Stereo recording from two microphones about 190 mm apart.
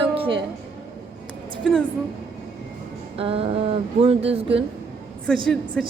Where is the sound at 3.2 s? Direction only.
30° right (ahead or behind).